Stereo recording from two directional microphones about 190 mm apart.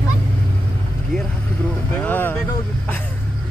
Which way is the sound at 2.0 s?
10° left (ahead or behind).